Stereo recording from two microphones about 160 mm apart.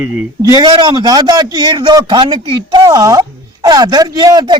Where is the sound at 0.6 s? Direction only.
25° right (ahead or behind).